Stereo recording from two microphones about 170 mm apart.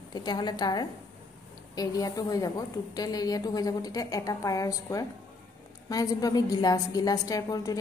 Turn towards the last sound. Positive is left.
turn(degrees=20)  # may be behind; listen again after turning